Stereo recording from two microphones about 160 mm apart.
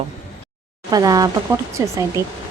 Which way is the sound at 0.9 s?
25° right (ahead or behind).